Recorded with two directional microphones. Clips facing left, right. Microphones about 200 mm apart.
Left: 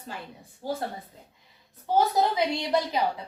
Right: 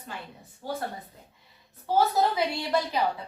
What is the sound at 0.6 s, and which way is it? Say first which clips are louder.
Speech: left 2 dB; 25° left (ahead or behind).